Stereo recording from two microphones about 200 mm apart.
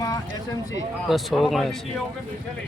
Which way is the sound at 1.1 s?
Centre (ahead or behind).